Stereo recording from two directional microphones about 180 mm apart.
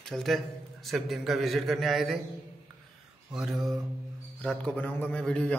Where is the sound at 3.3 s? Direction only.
Centre (ahead or behind).